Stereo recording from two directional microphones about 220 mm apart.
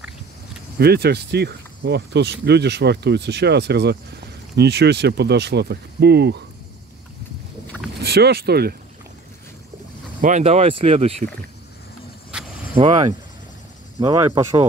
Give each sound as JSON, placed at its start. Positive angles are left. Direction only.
{"t": 0.7, "sound": "speech", "side_deg": -45}
{"t": 7.6, "sound": "boat", "side_deg": 5}
{"t": 8.0, "sound": "speech", "side_deg": -45}
{"t": 10.2, "sound": "speech", "side_deg": -30}
{"t": 12.3, "sound": "vehicle", "side_deg": -5}
{"t": 12.7, "sound": "speech", "side_deg": -25}